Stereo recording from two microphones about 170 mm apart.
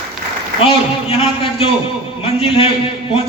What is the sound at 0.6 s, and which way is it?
A man's voice, 30° left (ahead or behind).